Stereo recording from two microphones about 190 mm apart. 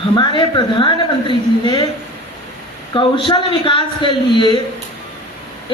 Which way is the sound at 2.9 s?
25° left (ahead or behind).